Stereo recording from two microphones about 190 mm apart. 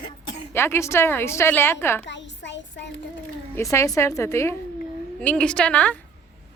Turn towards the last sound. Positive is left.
turn(degrees=5)  # may be behind; listen again after turning